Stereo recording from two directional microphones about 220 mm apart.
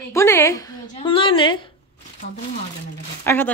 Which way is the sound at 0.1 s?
10° left (ahead or behind).